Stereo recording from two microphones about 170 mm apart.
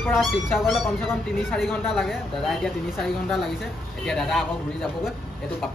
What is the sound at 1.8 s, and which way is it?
Speech, centre (ahead or behind).